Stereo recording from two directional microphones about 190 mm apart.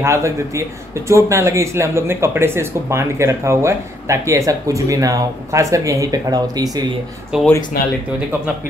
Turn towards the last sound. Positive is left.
turn(degrees=55)  # may be behind; listen again after turning